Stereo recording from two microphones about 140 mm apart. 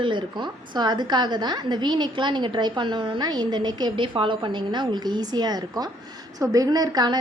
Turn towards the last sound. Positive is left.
turn(degrees=-30)  # may be behind; listen again after turning